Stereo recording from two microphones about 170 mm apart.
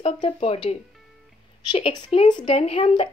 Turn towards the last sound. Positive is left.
turn(degrees=35)  # may be behind; listen again after turning